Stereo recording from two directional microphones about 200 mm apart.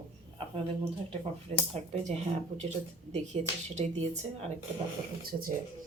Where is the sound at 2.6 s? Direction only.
35° right (ahead or behind).